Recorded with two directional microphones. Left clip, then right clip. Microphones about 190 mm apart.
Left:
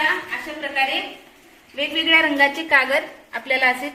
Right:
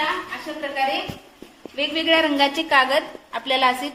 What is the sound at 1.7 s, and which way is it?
A woman's voice, 20° right (ahead or behind).